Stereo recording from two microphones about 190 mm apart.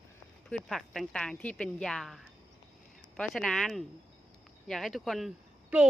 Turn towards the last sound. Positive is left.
turn(degrees=-5)  # may be behind; listen again after turning